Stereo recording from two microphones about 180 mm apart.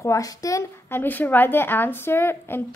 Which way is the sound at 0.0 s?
20° left (ahead or behind).